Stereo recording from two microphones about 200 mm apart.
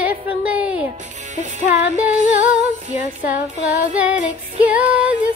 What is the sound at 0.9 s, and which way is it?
Speech, 35° right (ahead or behind).